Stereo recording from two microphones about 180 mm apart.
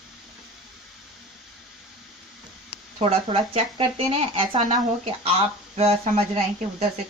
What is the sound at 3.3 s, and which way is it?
Speech, 30° right (ahead or behind).